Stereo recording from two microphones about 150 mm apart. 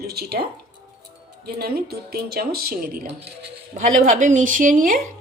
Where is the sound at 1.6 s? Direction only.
90° right; by 3.1 s 70° right (ahead or behind).